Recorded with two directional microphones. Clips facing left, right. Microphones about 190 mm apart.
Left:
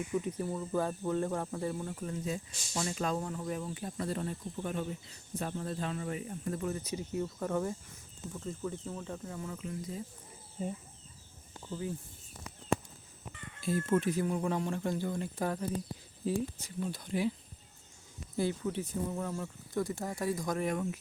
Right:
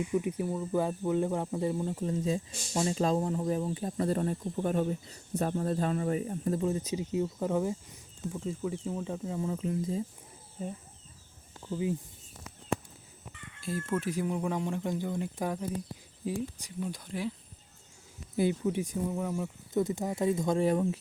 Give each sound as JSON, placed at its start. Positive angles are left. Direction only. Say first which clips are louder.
{"t": 0.1, "sound": "speech", "louder": "right 4 dB", "side_deg": -10}
{"t": 6.9, "sound": "speech", "louder": "right 5 dB", "side_deg": -15}
{"t": 11.7, "sound": "speech", "louder": "right 6 dB", "side_deg": -15}
{"t": 13.6, "sound": "speech", "louder": "left 3 dB", "side_deg": 0}
{"t": 14.1, "sound": "speech", "louder": "even", "side_deg": -10}
{"t": 17.1, "sound": "speech", "louder": "left 5 dB", "side_deg": 0}
{"t": 18.3, "sound": "speech", "louder": "right 4 dB", "side_deg": -20}